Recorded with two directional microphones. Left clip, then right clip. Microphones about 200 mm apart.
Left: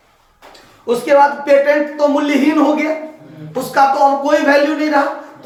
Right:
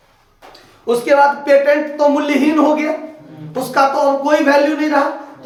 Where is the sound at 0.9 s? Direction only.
20° right (ahead or behind).